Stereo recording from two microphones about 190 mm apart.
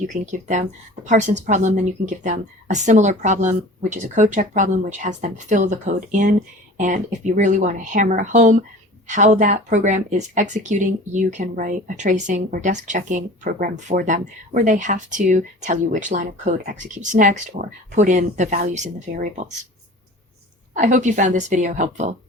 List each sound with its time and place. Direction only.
0.1 s speech: 40° right (ahead or behind)
20.7 s speech: 40° right (ahead or behind)